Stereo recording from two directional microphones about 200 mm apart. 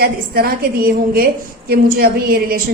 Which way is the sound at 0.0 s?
50° right (ahead or behind).